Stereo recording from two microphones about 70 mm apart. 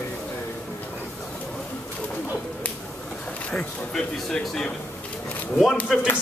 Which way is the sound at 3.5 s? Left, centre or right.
Centre.